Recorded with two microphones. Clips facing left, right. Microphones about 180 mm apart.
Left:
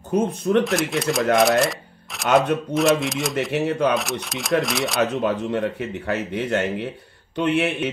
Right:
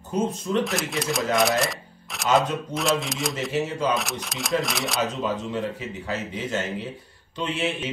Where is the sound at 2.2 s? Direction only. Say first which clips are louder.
Left 4 dB; 60° left (ahead or behind).